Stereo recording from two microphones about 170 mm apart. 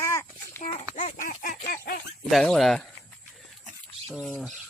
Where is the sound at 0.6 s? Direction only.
40° left (ahead or behind); by 2.0 s 60° left (ahead or behind).